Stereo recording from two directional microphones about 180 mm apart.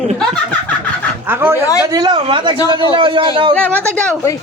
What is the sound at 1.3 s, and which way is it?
A man's voice, 15° right (ahead or behind).